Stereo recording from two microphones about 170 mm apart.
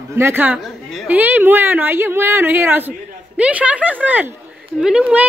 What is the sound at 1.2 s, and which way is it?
Speech, 10° right (ahead or behind).